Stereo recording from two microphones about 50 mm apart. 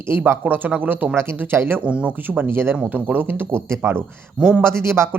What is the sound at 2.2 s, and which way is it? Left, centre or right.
Speech, right.